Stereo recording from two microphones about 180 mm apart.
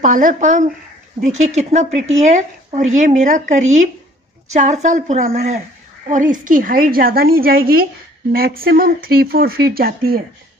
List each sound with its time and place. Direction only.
0.0 s a woman's voice: 45° right (ahead or behind)